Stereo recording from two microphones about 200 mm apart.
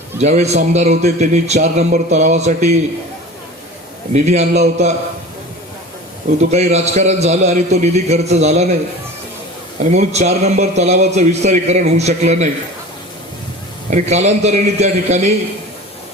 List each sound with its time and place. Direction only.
0.2 s a man's voice: 35° right (ahead or behind)
4.1 s a man's voice: 35° right (ahead or behind)
6.4 s a man's voice: 35° right (ahead or behind)
9.9 s a man's voice: 35° right (ahead or behind)
13.9 s a man's voice: 35° right (ahead or behind)